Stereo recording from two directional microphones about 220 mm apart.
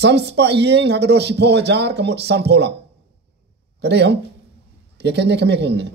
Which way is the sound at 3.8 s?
50° right (ahead or behind).